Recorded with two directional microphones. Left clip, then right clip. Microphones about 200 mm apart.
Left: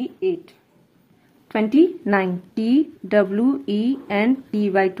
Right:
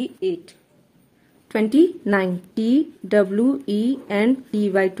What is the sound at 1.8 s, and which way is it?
Speech, 10° right (ahead or behind).